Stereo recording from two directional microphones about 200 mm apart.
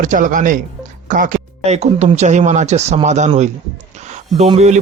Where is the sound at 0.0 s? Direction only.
40° right (ahead or behind).